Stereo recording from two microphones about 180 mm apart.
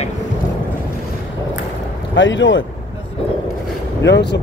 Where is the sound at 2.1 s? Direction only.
90° left.